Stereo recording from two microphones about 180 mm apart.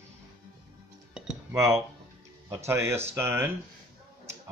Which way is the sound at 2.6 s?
15° right (ahead or behind).